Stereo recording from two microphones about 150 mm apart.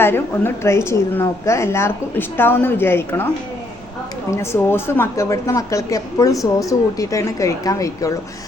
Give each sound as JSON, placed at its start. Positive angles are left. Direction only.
{"t": 0.0, "sound": "a woman's voice", "side_deg": 15}
{"t": 4.3, "sound": "a woman's voice", "side_deg": 20}